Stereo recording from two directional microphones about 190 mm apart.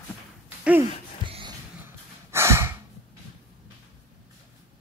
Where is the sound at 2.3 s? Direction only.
15° right (ahead or behind).